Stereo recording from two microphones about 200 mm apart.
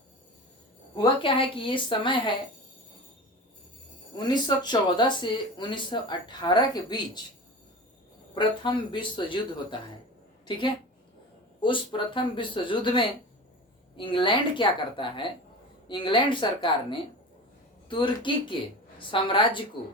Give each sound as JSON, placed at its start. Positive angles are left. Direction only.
{"t": 1.2, "sound": "speech", "side_deg": 25}
{"t": 4.2, "sound": "speech", "side_deg": 20}
{"t": 8.4, "sound": "speech", "side_deg": 25}
{"t": 11.6, "sound": "speech", "side_deg": 25}